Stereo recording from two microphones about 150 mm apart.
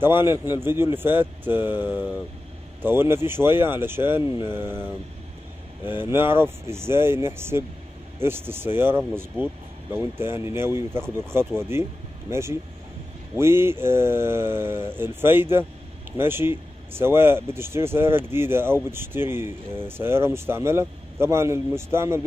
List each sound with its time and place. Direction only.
0.0 s speech: 15° right (ahead or behind)
5.9 s speech: 15° right (ahead or behind)